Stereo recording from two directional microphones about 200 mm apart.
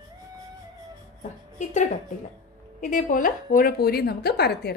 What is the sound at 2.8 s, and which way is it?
A woman's voice, 40° left (ahead or behind).